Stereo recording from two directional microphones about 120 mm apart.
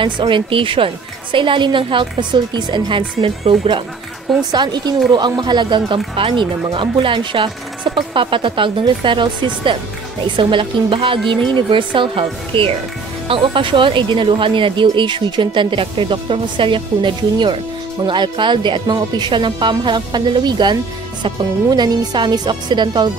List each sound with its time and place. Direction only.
0.0 s speech: 45° right (ahead or behind)
11.1 s speech: 5° left (ahead or behind)
11.5 s speech: 45° right (ahead or behind)